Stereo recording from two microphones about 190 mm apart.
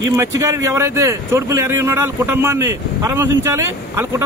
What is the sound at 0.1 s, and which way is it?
Speech, 15° right (ahead or behind).